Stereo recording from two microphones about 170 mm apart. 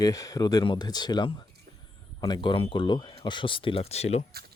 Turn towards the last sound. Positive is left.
turn(degrees=40)  # may be behind; listen again after turning